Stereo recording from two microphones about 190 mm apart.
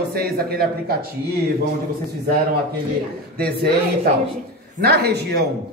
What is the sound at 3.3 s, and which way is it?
A man's voice, 55° right (ahead or behind).